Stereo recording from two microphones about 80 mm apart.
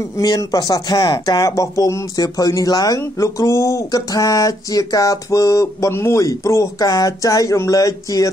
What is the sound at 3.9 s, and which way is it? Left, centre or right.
Speech, left.